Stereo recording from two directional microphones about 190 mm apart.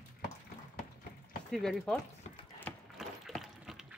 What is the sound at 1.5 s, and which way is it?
Speech, centre (ahead or behind).